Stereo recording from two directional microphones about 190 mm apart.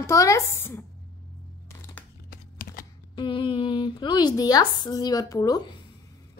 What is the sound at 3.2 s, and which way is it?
Speech, 25° left (ahead or behind).